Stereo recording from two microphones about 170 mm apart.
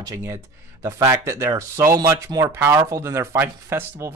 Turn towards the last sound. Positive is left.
turn(degrees=-15)  # may be behind; listen again after turning